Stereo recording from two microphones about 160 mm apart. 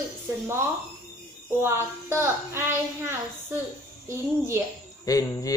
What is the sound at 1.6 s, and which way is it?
A child's voice, 15° right (ahead or behind).